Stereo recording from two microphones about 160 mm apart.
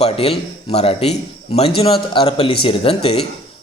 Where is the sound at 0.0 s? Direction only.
40° left (ahead or behind).